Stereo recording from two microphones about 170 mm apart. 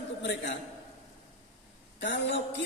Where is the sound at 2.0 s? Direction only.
90° left.